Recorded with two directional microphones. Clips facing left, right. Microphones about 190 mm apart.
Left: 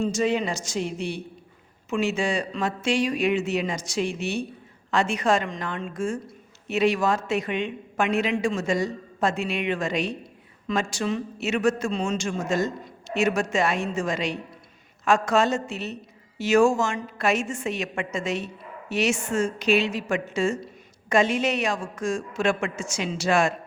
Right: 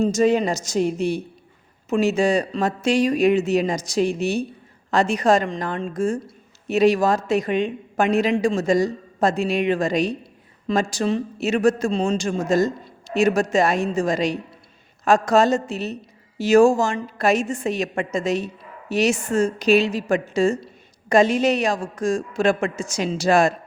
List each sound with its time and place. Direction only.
0.0 s a woman's voice: 40° right (ahead or behind)